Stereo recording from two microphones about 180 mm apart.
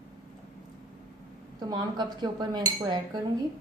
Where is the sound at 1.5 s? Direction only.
25° right (ahead or behind).